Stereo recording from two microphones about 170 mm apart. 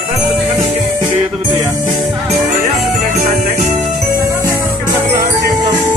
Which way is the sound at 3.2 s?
45° right (ahead or behind).